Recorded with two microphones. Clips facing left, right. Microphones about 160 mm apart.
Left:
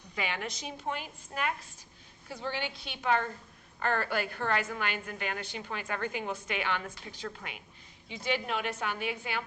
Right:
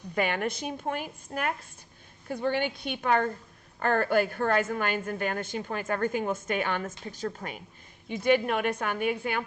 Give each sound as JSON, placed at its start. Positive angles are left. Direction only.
{"t": 0.1, "sound": "a woman's voice", "side_deg": -50}